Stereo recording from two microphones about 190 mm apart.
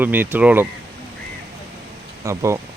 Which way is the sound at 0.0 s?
10° right (ahead or behind).